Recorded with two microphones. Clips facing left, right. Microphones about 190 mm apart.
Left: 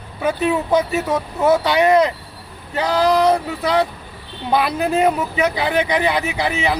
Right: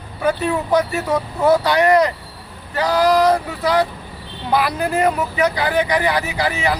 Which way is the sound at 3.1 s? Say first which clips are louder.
Even; 25° left (ahead or behind).